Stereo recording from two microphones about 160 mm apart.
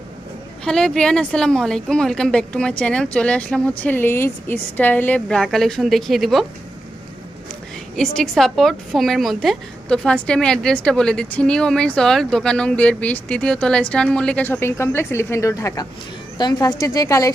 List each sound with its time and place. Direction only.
0.6 s a woman's voice: 5° left (ahead or behind)
7.9 s a woman's voice: 5° left (ahead or behind); by 17.3 s 20° left (ahead or behind)